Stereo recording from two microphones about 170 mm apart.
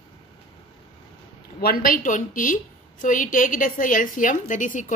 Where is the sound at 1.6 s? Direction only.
60° left (ahead or behind).